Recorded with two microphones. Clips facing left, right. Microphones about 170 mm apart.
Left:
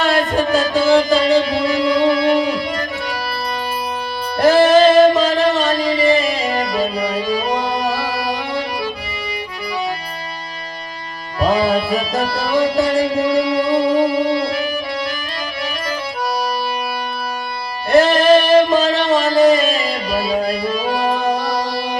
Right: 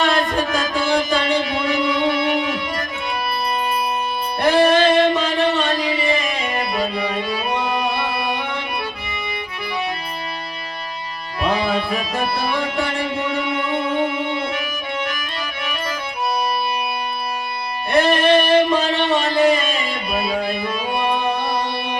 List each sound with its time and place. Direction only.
0.1 s music: 35° left (ahead or behind)
4.4 s music: 35° left (ahead or behind)
11.3 s music: 35° left (ahead or behind)
17.9 s a sound: 35° left (ahead or behind)